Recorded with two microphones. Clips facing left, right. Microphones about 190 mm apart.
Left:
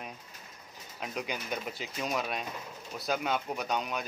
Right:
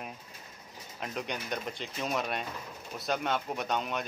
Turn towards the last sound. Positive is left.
turn(degrees=0)  # may be behind; listen again after turning